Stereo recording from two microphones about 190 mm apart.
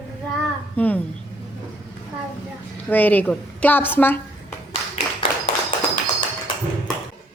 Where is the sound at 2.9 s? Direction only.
10° left (ahead or behind).